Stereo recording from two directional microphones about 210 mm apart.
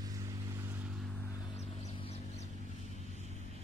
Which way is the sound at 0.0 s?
15° right (ahead or behind).